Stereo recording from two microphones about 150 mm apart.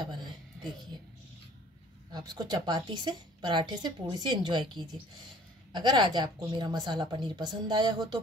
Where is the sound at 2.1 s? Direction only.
25° right (ahead or behind).